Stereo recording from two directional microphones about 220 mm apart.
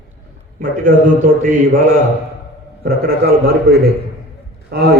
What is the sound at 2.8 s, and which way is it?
A man's voice, 45° right (ahead or behind).